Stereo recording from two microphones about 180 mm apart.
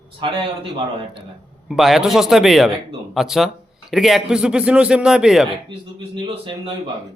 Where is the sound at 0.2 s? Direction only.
25° right (ahead or behind).